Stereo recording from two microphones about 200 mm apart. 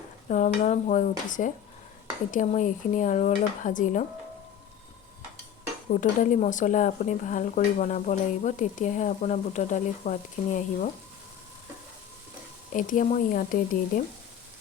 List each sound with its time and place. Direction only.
0.3 s speech: 40° left (ahead or behind)
5.9 s speech: 40° left (ahead or behind)
12.7 s speech: 40° left (ahead or behind)